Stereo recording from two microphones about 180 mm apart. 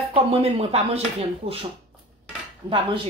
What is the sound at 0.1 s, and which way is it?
Speech, 30° right (ahead or behind).